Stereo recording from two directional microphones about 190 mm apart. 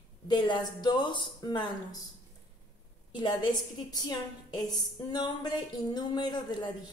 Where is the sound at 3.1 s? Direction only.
25° left (ahead or behind).